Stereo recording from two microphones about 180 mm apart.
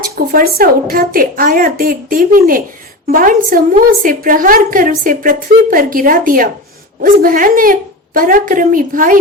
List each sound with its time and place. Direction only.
0.3 s a woman's voice: 55° right (ahead or behind)